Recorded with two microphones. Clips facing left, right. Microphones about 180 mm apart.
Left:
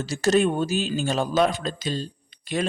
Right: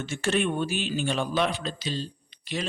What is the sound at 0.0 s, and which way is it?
A man's voice, 40° left (ahead or behind).